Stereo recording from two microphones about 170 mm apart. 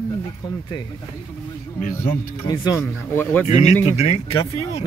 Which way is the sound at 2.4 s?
20° left (ahead or behind).